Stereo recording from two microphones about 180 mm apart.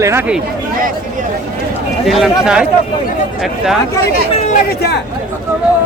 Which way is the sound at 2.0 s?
Centre (ahead or behind).